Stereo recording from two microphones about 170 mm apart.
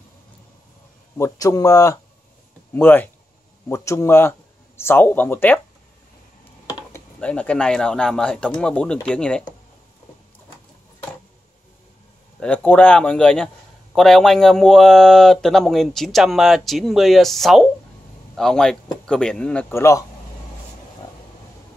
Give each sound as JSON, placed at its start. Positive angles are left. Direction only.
{"t": 1.1, "sound": "speech", "side_deg": 20}
{"t": 7.2, "sound": "speech", "side_deg": 5}
{"t": 12.4, "sound": "speech", "side_deg": 10}